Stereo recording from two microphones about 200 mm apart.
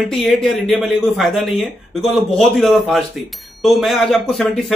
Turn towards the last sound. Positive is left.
turn(degrees=5)  # may be behind; listen again after turning